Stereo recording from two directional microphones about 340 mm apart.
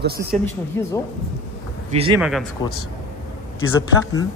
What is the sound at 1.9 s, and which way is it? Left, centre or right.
Speech, centre.